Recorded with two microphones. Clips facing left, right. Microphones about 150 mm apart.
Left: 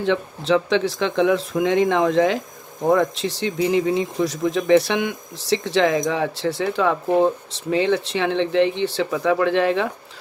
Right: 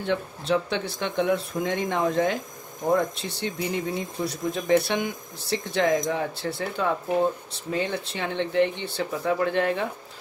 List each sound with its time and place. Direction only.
0.0 s speech: 90° left